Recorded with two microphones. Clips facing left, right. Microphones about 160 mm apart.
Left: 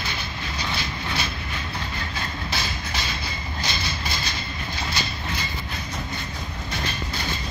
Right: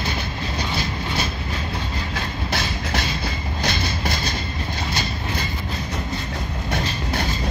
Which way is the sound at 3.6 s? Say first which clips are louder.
Right 6 dB; 60° right (ahead or behind).